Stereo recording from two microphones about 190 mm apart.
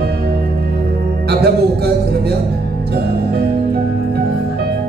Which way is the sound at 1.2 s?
60° right (ahead or behind).